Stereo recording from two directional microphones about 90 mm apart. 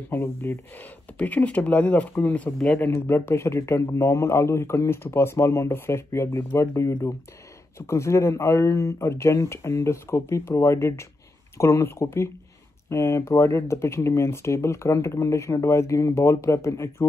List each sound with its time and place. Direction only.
0.1 s speech: 25° left (ahead or behind)
2.9 s speech: 30° left (ahead or behind)